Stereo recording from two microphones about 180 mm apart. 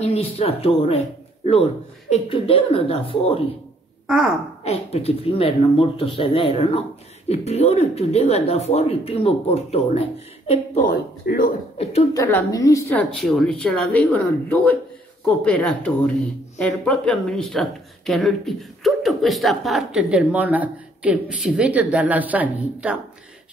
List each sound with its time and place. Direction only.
0.0 s speech: 35° left (ahead or behind)
4.6 s speech: 35° left (ahead or behind); by 11.5 s 55° left (ahead or behind)
11.8 s speech: 35° left (ahead or behind)
12.1 s speech: 15° left (ahead or behind); by 22.9 s 5° right (ahead or behind)